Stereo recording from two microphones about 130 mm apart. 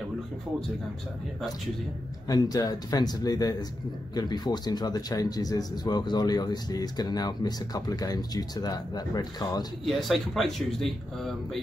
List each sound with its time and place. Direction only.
2.2 s speech: 30° left (ahead or behind)
9.8 s speech: centre (ahead or behind)